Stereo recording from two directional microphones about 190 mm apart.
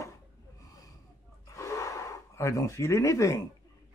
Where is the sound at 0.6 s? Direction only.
20° left (ahead or behind).